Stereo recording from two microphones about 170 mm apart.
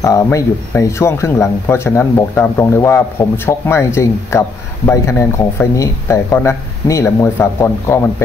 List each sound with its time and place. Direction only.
0.0 s speech: 15° left (ahead or behind)